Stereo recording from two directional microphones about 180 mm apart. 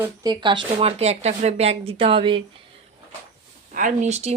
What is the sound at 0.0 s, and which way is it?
Speech, 20° right (ahead or behind).